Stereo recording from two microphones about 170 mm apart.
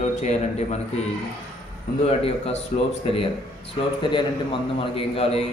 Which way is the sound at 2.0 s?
35° left (ahead or behind).